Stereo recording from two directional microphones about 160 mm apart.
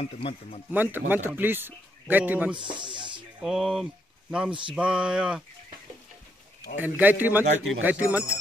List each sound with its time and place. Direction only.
0.0 s a man's voice: 35° left (ahead or behind)
0.7 s speech: 10° right (ahead or behind)
2.6 s speech: 30° right (ahead or behind)
3.3 s speech: 5° right (ahead or behind)
6.8 s speech: 10° right (ahead or behind)